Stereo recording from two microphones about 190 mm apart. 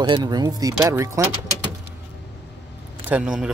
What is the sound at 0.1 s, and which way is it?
Speech, 20° right (ahead or behind).